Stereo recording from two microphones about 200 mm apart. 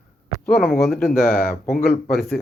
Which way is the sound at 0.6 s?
Centre (ahead or behind).